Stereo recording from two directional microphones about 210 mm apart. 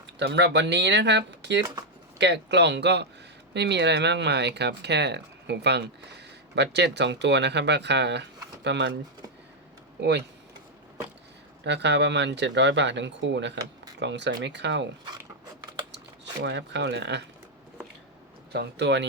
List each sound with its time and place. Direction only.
0.2 s speech: 55° right (ahead or behind)
10.0 s speech: 55° right (ahead or behind)
11.6 s speech: 55° right (ahead or behind)
16.4 s speech: 55° right (ahead or behind)
18.5 s speech: 55° right (ahead or behind)